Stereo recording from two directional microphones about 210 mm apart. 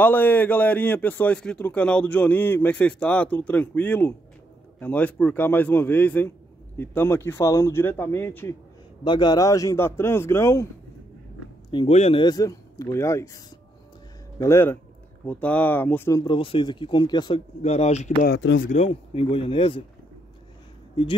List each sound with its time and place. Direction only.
0.0 s a man's voice: 10° left (ahead or behind)
9.0 s a man's voice: 20° left (ahead or behind)
11.7 s a man's voice: 25° left (ahead or behind)
14.4 s a man's voice: 10° left (ahead or behind); by 18.1 s 30° left (ahead or behind)
18.2 s speech: 55° left (ahead or behind)
18.7 s speech: 30° left (ahead or behind)